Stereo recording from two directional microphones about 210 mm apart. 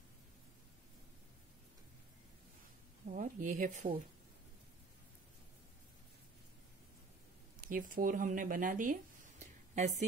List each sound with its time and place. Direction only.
3.1 s speech: 40° right (ahead or behind)
7.6 s speech: 40° right (ahead or behind)